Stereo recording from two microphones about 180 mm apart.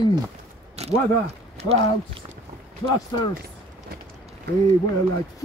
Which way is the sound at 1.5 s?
35° right (ahead or behind).